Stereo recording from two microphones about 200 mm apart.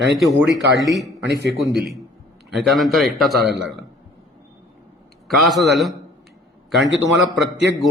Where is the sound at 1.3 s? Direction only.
60° right (ahead or behind).